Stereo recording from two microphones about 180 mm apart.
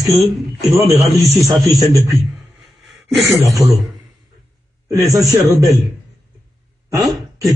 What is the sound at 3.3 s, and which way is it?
Speech, 20° right (ahead or behind).